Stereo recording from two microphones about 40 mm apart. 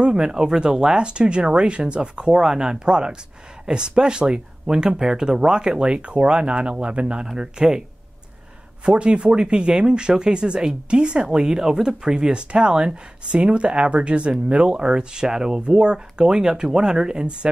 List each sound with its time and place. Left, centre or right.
0.0 s speech: centre
7.2 s speech: centre
8.8 s speech: right